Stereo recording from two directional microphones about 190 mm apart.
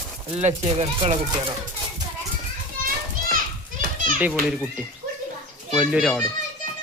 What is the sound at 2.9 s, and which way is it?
Children playing, 50° right (ahead or behind).